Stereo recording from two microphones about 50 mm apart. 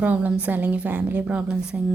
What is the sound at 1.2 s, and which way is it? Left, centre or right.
Speech, right.